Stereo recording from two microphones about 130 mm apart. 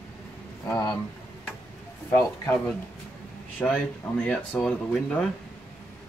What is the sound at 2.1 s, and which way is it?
Speech, 20° left (ahead or behind).